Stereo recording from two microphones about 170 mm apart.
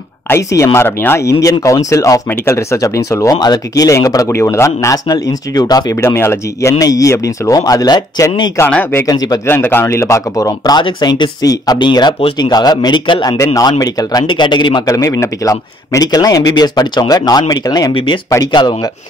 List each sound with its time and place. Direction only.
0.3 s speech: 15° left (ahead or behind)
8.6 s speech: 10° left (ahead or behind)
9.0 s speech: 20° left (ahead or behind)